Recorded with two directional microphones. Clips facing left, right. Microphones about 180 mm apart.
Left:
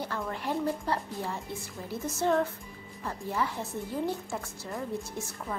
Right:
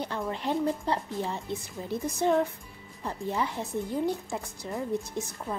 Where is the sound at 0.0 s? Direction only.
20° right (ahead or behind).